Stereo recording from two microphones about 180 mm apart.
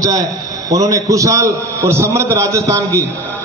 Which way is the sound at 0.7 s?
20° right (ahead or behind).